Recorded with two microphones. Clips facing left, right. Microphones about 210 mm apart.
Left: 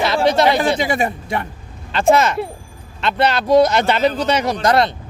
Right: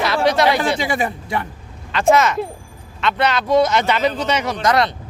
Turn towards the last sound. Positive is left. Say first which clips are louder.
# left 2 dB
turn(degrees=30)  # may be behind; listen again after turning